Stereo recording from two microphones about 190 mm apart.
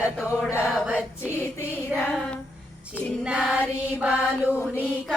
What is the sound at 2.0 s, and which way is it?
Child singing, 5° left (ahead or behind).